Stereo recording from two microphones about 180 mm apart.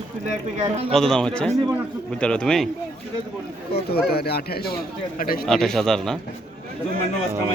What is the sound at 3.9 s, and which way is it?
A man's voice, 60° left (ahead or behind).